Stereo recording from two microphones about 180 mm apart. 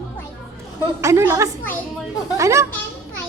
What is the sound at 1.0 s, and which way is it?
A woman's voice, 15° right (ahead or behind).